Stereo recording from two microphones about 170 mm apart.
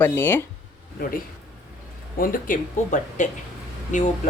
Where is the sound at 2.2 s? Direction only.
50° left (ahead or behind).